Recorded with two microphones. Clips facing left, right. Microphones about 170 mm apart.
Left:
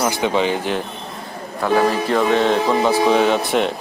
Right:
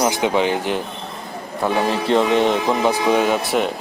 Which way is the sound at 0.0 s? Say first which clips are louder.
Right 1 dB; 15° right (ahead or behind).